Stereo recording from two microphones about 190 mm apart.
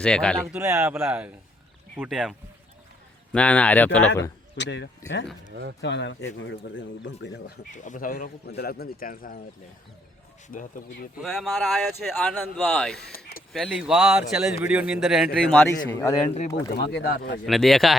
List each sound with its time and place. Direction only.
0.0 s a man's voice: 5° left (ahead or behind)
0.5 s a man's voice: 15° right (ahead or behind)
3.3 s speech: 5° left (ahead or behind)
4.5 s speech: 65° left (ahead or behind)
7.7 s a man's voice: 40° left (ahead or behind)
10.5 s a man's voice: 45° left (ahead or behind)
11.2 s a man's voice: centre (ahead or behind)
16.7 s speech: 60° left (ahead or behind)
17.4 s a man's voice: centre (ahead or behind)